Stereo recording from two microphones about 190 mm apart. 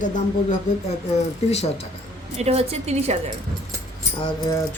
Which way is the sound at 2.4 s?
35° right (ahead or behind).